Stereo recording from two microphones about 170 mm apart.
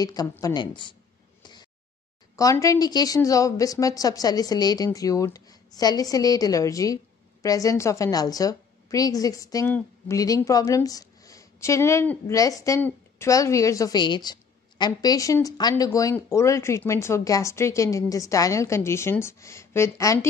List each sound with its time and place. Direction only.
0.0 s a woman's voice: 20° left (ahead or behind)
1.4 s a sound: 25° left (ahead or behind)
2.3 s a woman's voice: 20° left (ahead or behind)